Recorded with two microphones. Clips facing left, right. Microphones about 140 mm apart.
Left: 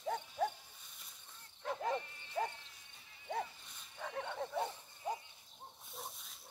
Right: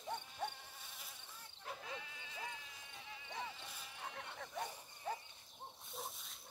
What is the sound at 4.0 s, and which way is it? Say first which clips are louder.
Cricket: left 8 dB; 80° left.